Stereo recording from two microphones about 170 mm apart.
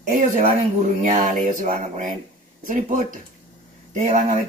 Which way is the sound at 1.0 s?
50° right (ahead or behind).